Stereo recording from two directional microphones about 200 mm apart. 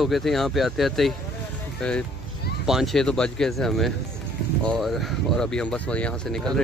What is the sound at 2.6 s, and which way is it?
Speech, centre (ahead or behind).